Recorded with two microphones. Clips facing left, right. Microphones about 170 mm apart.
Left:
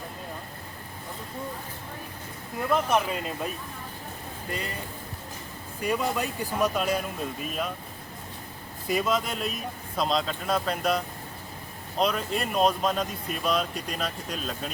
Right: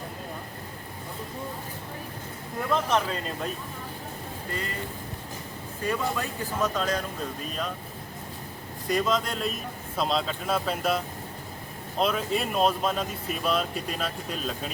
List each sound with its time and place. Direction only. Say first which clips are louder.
2.6 s speech: left 1 dB; 10° left (ahead or behind)
5.8 s speech: left 2 dB; 15° left (ahead or behind)
8.9 s speech: even; 5° left (ahead or behind)